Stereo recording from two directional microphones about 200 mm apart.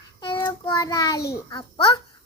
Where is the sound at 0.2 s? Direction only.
20° left (ahead or behind).